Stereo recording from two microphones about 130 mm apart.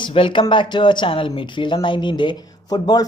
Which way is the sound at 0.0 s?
40° left (ahead or behind).